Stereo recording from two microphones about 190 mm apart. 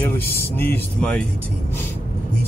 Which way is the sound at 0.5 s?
10° left (ahead or behind).